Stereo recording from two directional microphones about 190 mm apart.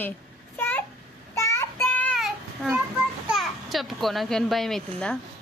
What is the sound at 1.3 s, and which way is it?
Child singing, 15° left (ahead or behind).